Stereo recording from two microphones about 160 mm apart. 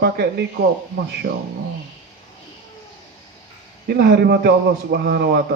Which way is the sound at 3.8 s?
85° right.